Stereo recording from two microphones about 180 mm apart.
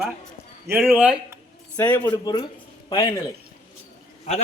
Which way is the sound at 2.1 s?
25° left (ahead or behind).